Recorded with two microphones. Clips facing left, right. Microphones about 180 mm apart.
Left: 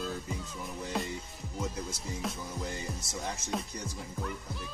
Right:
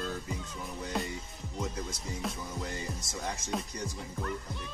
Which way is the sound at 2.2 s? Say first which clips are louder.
Even; centre (ahead or behind).